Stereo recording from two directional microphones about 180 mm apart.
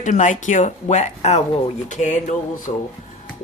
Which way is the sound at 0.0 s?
45° left (ahead or behind).